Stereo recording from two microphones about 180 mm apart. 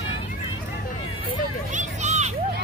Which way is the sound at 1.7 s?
40° right (ahead or behind).